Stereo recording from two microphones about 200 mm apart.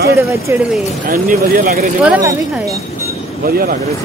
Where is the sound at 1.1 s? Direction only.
40° right (ahead or behind).